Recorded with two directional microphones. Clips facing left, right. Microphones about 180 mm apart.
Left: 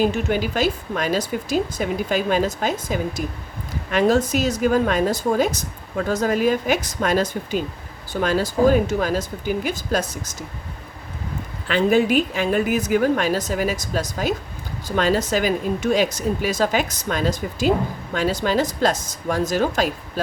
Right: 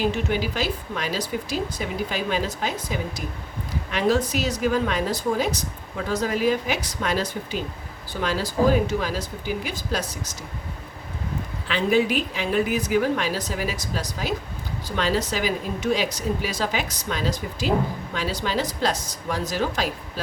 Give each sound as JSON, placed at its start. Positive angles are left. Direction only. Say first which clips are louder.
{"t": 0.1, "sound": "a woman's voice", "louder": "left 3 dB", "side_deg": 50}
{"t": 11.7, "sound": "a woman's voice", "louder": "left 4 dB", "side_deg": 50}